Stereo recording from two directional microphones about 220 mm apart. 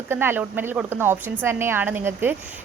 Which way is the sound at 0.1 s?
10° right (ahead or behind).